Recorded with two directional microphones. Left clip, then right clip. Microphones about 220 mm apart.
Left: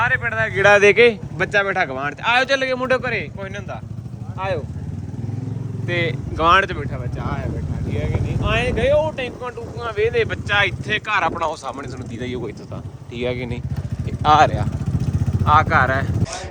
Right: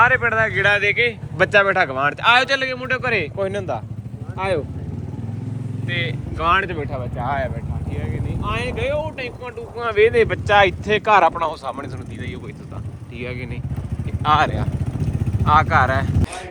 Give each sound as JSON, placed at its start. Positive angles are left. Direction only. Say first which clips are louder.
{"t": 0.0, "sound": "speech", "louder": "right 4 dB", "side_deg": 5}
{"t": 0.6, "sound": "speech", "louder": "left 8 dB", "side_deg": 25}
{"t": 1.4, "sound": "speech", "louder": "right 7 dB", "side_deg": 5}
{"t": 2.4, "sound": "speech", "louder": "left 2 dB", "side_deg": 10}
{"t": 3.0, "sound": "speech", "louder": "right 4 dB", "side_deg": 0}
{"t": 6.3, "sound": "speech", "louder": "left 3 dB", "side_deg": 10}
{"t": 8.4, "sound": "speech", "louder": "left 5 dB", "side_deg": 10}
{"t": 9.7, "sound": "speech", "louder": "right 5 dB", "side_deg": -50}
{"t": 10.4, "sound": "speech", "louder": "right 4 dB", "side_deg": 0}
{"t": 11.3, "sound": "speech", "louder": "right 1 dB", "side_deg": 10}
{"t": 13.1, "sound": "speech", "louder": "left 6 dB", "side_deg": 15}